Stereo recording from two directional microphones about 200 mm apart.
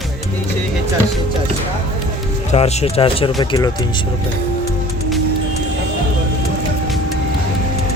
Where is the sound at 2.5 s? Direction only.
30° left (ahead or behind).